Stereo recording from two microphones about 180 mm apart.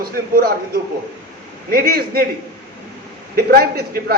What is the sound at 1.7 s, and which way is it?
Speech, 55° right (ahead or behind).